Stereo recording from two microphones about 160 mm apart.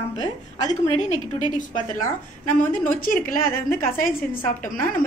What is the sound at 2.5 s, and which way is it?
A woman's voice, 55° left (ahead or behind).